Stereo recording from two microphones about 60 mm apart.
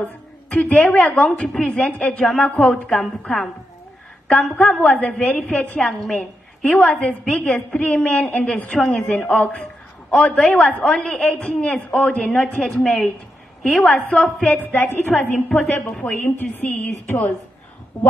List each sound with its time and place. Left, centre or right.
0.0 s a woman's voice: left
2.7 s a woman's voice: centre
5.8 s a woman's voice: centre
6.1 s a woman's voice: centre
14.5 s a woman's voice: left
16.5 s speech: left